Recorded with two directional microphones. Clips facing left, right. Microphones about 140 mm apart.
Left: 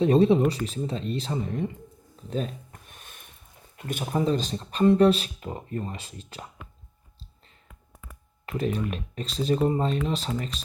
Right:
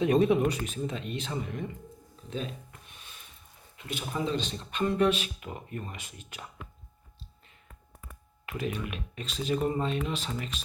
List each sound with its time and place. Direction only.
0.0 s speech: 30° left (ahead or behind)
2.9 s a sound: 50° left (ahead or behind)
3.8 s speech: 50° left (ahead or behind); by 6.5 s 35° left (ahead or behind)
8.4 s speech: 35° left (ahead or behind)